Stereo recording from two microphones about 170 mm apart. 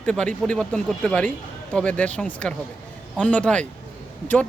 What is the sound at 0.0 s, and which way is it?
A man's voice, 5° left (ahead or behind).